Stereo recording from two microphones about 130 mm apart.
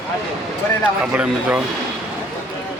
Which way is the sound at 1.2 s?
10° right (ahead or behind).